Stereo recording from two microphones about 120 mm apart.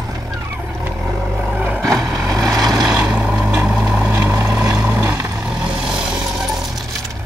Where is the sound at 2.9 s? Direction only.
10° right (ahead or behind).